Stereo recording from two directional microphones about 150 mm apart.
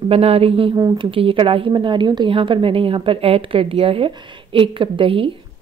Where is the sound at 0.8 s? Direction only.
25° right (ahead or behind).